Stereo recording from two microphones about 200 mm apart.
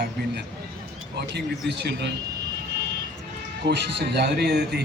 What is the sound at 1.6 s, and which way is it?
Speech, 55° right (ahead or behind).